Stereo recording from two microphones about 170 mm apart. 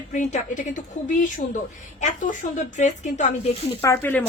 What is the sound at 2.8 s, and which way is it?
Speech, 45° left (ahead or behind).